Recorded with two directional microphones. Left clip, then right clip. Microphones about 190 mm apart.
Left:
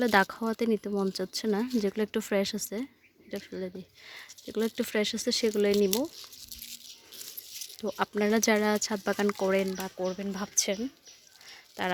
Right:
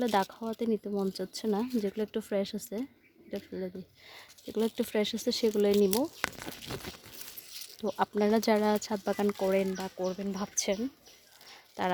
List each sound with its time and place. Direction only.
0.0 s speech: 15° left (ahead or behind); by 5.7 s centre (ahead or behind)
7.8 s speech: centre (ahead or behind)